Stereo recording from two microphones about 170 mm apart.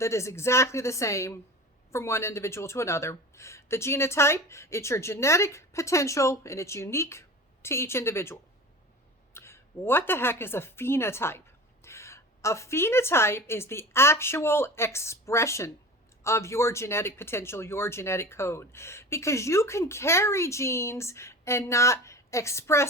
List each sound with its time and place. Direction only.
0.0 s a woman's voice: 15° left (ahead or behind)